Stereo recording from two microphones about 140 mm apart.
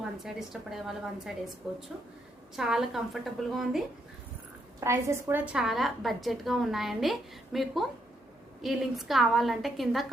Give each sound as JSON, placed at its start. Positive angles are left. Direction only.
{"t": 0.0, "sound": "a woman's voice", "side_deg": -5}
{"t": 4.8, "sound": "a woman's voice", "side_deg": -20}
{"t": 5.5, "sound": "a woman's voice", "side_deg": -5}